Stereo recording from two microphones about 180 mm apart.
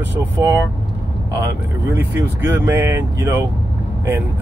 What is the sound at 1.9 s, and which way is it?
Speech, 10° right (ahead or behind).